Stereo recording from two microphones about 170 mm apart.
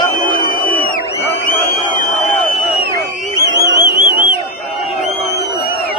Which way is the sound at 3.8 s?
25° left (ahead or behind).